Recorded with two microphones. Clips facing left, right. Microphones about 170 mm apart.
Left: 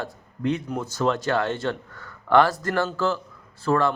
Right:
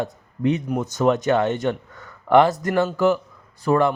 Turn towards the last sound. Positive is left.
turn(degrees=-15)  # may be behind; listen again after turning